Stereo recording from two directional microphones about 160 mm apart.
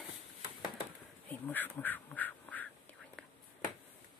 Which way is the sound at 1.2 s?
10° left (ahead or behind).